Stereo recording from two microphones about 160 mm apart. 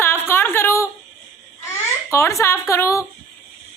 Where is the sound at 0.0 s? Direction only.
15° left (ahead or behind).